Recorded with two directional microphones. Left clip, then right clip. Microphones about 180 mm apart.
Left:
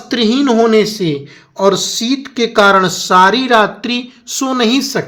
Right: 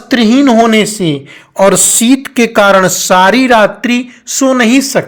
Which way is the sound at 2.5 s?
25° right (ahead or behind).